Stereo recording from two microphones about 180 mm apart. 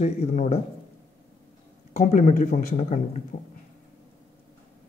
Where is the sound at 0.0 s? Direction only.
40° left (ahead or behind).